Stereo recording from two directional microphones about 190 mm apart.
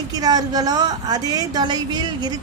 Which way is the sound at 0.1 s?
20° right (ahead or behind).